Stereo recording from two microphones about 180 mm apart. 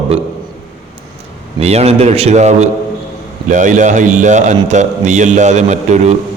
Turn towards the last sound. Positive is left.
turn(degrees=-40)  # may be behind; listen again after turning